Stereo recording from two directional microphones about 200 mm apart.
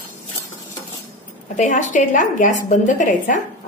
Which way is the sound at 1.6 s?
40° left (ahead or behind).